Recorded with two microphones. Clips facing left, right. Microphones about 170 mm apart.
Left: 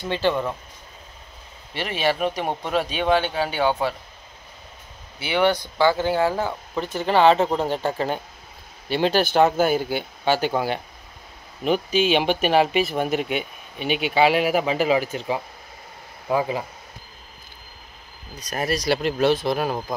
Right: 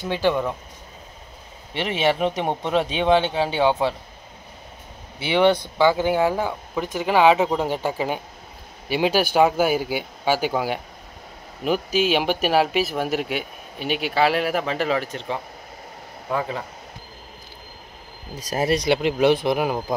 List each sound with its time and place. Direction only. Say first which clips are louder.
0.0 s speech: right 1 dB; 10° right (ahead or behind)
1.7 s speech: right 2 dB; 20° right (ahead or behind)
5.2 s speech: right 3 dB; 25° right (ahead or behind); by 16.6 s 15° left (ahead or behind)
18.3 s speech: right 4 dB; 25° right (ahead or behind)
18.9 s speech: right 2 dB; 15° right (ahead or behind)